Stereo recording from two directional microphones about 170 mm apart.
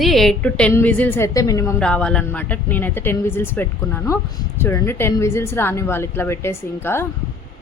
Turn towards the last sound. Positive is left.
turn(degrees=15)  # may be behind; listen again after turning